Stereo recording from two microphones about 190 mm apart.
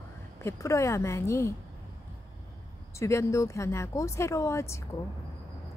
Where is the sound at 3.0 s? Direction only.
15° left (ahead or behind).